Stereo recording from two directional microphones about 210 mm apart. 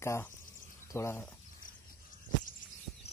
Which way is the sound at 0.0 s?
15° left (ahead or behind).